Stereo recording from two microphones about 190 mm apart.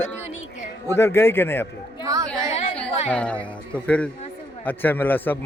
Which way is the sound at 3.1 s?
5° left (ahead or behind).